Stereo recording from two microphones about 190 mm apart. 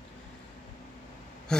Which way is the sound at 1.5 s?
5° left (ahead or behind).